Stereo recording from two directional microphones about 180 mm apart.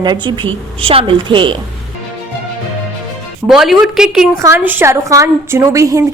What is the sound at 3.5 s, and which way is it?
A woman's voice, centre (ahead or behind).